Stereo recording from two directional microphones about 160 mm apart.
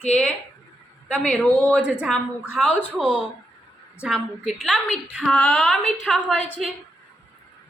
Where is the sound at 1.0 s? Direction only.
5° left (ahead or behind).